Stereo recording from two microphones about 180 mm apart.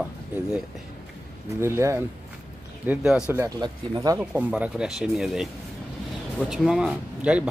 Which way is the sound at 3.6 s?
20° right (ahead or behind).